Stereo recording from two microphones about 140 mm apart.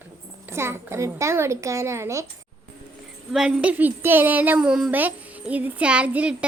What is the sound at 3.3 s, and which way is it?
Speech, 5° right (ahead or behind).